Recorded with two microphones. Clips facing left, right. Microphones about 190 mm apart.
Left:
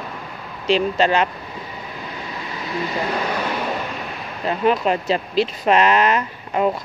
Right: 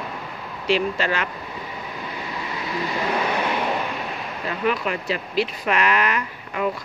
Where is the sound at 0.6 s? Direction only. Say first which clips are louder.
Left 4 dB; 20° left (ahead or behind).